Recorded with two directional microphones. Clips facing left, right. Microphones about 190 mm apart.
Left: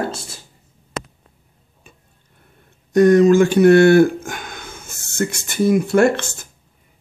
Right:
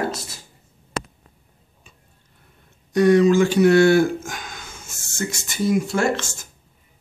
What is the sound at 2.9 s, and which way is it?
Speech, 45° left (ahead or behind).